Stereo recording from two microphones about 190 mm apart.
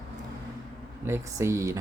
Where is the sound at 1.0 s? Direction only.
15° right (ahead or behind).